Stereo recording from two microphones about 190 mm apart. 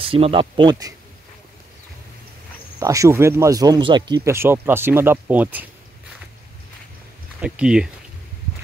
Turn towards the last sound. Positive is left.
turn(degrees=-5)  # may be behind; listen again after turning